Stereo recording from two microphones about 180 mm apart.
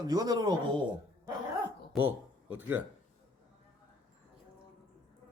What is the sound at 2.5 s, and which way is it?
Speech, 10° right (ahead or behind).